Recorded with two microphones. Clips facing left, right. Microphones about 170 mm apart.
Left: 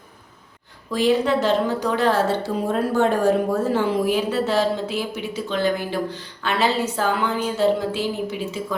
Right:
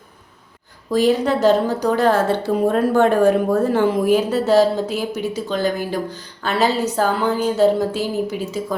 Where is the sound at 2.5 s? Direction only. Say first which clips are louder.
Right 6 dB; 65° right (ahead or behind).